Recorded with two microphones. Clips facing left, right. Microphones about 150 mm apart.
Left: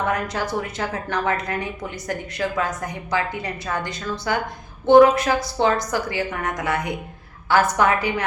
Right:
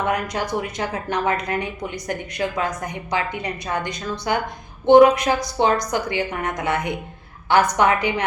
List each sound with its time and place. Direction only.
0.1 s a woman's voice: 15° right (ahead or behind)